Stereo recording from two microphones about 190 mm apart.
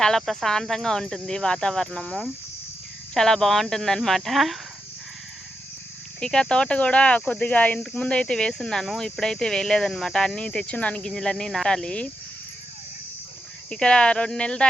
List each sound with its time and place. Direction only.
0.0 s speech: centre (ahead or behind)
6.1 s speech: 5° left (ahead or behind)
13.7 s speech: 5° left (ahead or behind)